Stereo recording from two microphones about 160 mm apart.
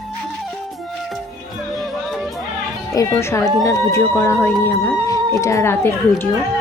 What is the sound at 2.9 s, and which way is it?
Speech, 20° left (ahead or behind).